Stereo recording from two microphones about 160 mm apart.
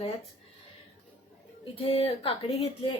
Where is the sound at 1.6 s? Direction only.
35° left (ahead or behind).